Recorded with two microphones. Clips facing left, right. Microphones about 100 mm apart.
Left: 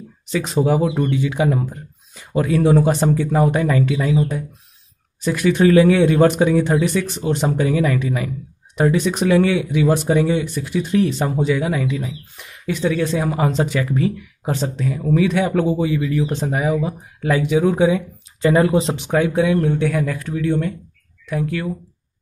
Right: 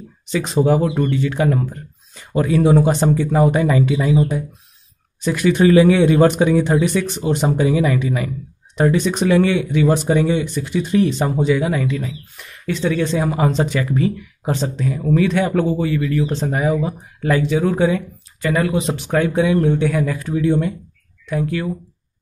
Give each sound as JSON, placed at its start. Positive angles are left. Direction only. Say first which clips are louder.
{"t": 0.3, "sound": "speech", "louder": "right 2 dB", "side_deg": 0}
{"t": 5.2, "sound": "speech", "louder": "right 1 dB", "side_deg": 0}
{"t": 18.4, "sound": "speech", "louder": "left 4 dB", "side_deg": 25}
{"t": 19.0, "sound": "speech", "louder": "right 3 dB", "side_deg": 10}
{"t": 21.3, "sound": "speech", "louder": "right 1 dB", "side_deg": 0}